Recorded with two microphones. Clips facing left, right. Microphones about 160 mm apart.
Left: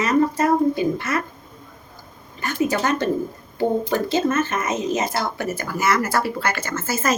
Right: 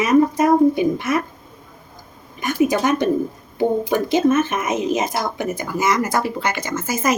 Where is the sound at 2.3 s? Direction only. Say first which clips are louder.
Right 4 dB; 15° right (ahead or behind).